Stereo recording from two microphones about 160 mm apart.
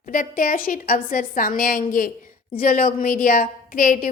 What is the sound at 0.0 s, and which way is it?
A woman's voice, 60° left (ahead or behind).